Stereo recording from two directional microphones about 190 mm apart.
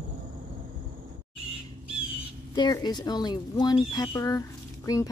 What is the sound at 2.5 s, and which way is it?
Speech, 20° left (ahead or behind).